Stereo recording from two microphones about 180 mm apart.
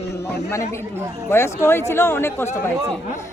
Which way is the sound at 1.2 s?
15° left (ahead or behind).